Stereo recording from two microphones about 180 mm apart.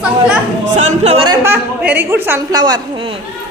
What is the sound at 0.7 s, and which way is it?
Speech, 35° right (ahead or behind).